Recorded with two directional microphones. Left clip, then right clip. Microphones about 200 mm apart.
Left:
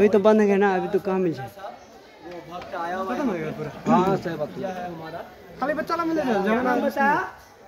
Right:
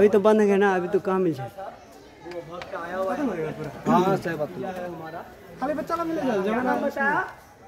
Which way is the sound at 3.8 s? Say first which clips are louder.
Left 1 dB; 10° right (ahead or behind).